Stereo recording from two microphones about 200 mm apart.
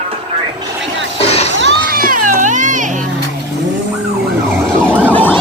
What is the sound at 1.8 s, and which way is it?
Music, 45° right (ahead or behind).